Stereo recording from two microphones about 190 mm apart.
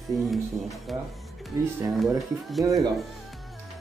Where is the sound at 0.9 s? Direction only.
Centre (ahead or behind).